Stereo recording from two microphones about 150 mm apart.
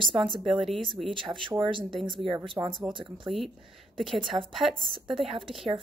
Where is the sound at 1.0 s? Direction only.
35° right (ahead or behind).